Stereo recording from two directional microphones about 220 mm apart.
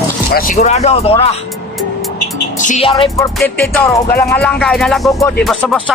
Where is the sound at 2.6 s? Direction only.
30° left (ahead or behind).